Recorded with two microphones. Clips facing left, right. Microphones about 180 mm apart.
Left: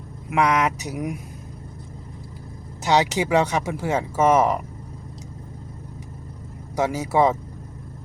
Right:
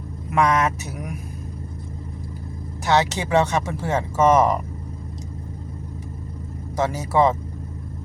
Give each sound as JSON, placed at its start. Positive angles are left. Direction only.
{"t": 0.3, "sound": "speech", "side_deg": 10}
{"t": 2.8, "sound": "speech", "side_deg": 15}
{"t": 6.7, "sound": "speech", "side_deg": 10}